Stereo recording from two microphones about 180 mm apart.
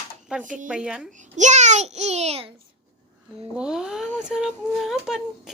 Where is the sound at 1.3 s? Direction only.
40° right (ahead or behind).